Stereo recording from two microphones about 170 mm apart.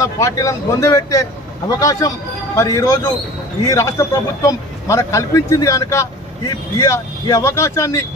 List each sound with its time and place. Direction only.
0.0 s a man's voice: 20° left (ahead or behind)